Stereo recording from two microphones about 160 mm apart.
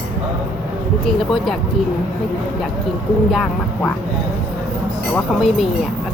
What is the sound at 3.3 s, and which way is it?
Speech, 5° left (ahead or behind).